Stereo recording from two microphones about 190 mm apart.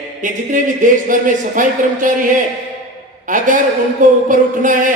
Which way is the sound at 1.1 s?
45° right (ahead or behind).